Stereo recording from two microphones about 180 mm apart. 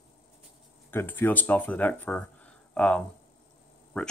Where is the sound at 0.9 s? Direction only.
10° left (ahead or behind).